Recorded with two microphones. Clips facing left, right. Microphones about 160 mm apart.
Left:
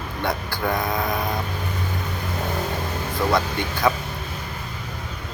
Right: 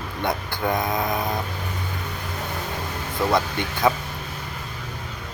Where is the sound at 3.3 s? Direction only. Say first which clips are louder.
Even; 20° right (ahead or behind).